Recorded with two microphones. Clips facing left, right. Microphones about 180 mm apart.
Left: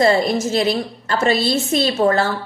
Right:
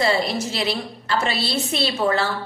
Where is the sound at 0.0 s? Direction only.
45° left (ahead or behind).